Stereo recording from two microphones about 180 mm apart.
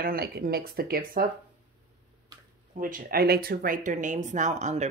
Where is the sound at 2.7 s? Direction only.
50° right (ahead or behind).